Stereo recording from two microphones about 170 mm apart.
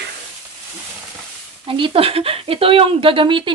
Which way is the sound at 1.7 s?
30° right (ahead or behind).